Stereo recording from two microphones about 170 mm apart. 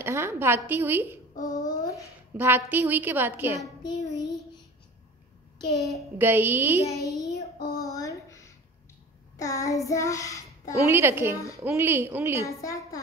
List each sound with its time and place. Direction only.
0.0 s a sound: 15° right (ahead or behind)
0.7 s a woman's voice: 10° right (ahead or behind)
1.5 s a sound: 20° left (ahead or behind)
2.3 s a woman's voice: 10° right (ahead or behind)
3.6 s child singing: 20° left (ahead or behind)
5.7 s a child's voice: centre (ahead or behind)
6.1 s a woman's voice: 10° right (ahead or behind)
7.1 s child singing: centre (ahead or behind)
7.7 s a sound: 20° left (ahead or behind)
9.4 s child singing: 20° left (ahead or behind)
10.9 s a woman's voice: 15° right (ahead or behind)
12.4 s child singing: 20° left (ahead or behind)